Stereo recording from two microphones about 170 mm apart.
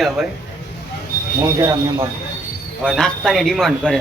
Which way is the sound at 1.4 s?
15° right (ahead or behind).